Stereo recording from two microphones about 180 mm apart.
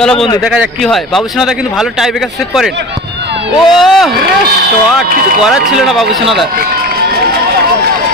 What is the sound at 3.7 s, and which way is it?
Speech, centre (ahead or behind).